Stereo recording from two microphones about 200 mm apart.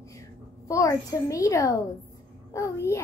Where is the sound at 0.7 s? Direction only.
15° left (ahead or behind).